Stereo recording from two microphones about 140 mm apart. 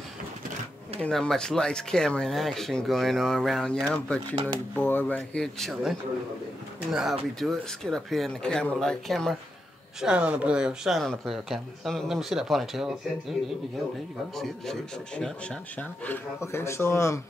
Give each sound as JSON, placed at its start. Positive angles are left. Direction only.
{"t": 1.0, "sound": "speech", "side_deg": 5}
{"t": 14.3, "sound": "speech", "side_deg": 5}